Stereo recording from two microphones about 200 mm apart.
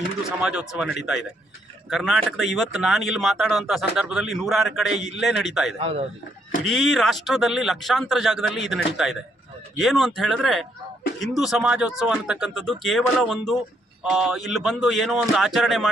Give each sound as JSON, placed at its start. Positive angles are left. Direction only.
{"t": 0.3, "sound": "speech", "side_deg": -5}
{"t": 5.8, "sound": "a man's voice", "side_deg": -30}
{"t": 6.7, "sound": "speech", "side_deg": 0}